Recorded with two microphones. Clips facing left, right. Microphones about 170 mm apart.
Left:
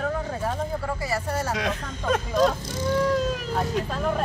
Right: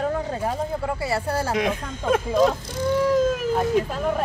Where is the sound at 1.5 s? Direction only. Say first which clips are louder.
Right 4 dB; 10° right (ahead or behind).